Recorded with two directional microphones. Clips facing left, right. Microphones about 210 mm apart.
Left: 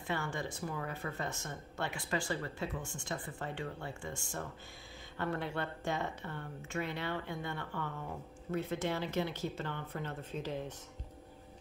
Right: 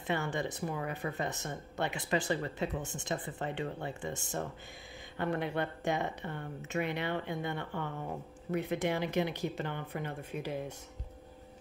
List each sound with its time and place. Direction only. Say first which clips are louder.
0.0 s speech: right 4 dB; 20° right (ahead or behind)